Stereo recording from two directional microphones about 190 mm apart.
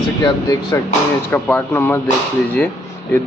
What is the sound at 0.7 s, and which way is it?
A man's voice, 15° left (ahead or behind).